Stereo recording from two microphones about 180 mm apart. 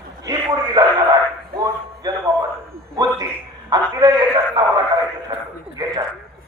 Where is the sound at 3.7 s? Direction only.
20° right (ahead or behind).